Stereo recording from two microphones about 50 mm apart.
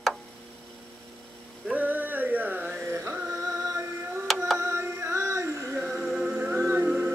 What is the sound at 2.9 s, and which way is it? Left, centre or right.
Music, right.